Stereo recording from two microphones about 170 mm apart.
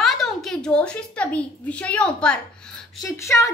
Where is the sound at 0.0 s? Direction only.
Centre (ahead or behind).